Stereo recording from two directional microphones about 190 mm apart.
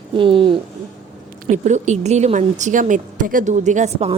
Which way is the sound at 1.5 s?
40° right (ahead or behind).